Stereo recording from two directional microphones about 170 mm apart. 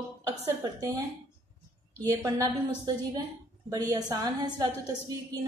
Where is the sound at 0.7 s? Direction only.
20° right (ahead or behind).